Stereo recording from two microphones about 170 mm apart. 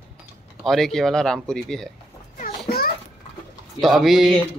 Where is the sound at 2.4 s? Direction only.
60° left (ahead or behind).